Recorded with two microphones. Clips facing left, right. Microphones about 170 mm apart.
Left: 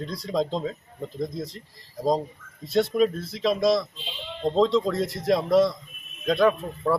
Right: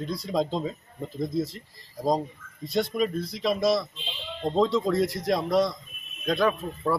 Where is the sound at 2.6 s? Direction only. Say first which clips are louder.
Left 4 dB; centre (ahead or behind).